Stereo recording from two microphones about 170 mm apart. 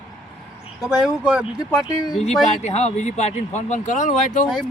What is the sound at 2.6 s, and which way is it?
Speech, 40° left (ahead or behind).